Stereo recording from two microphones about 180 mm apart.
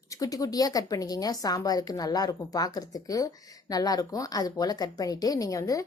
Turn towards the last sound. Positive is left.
turn(degrees=20)  # may be behind; listen again after turning